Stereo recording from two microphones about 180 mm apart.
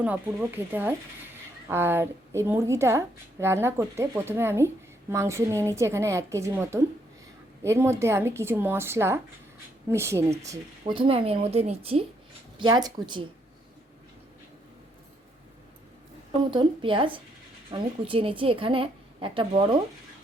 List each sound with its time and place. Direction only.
0.0 s speech: 10° right (ahead or behind)
10.9 s a woman's voice: 30° right (ahead or behind)
16.5 s a woman's voice: 25° right (ahead or behind)